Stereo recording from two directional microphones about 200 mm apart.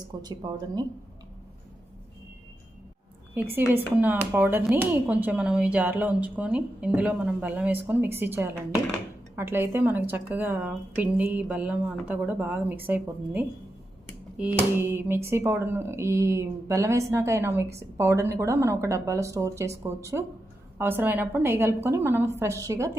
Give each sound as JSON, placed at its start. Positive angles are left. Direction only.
{"t": 0.2, "sound": "a woman's voice", "side_deg": -20}
{"t": 3.3, "sound": "speech", "side_deg": -10}